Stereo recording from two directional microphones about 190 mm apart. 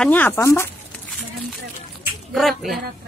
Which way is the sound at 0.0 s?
10° left (ahead or behind).